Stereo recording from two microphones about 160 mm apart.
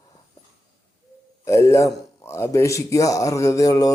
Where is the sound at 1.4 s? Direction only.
15° left (ahead or behind).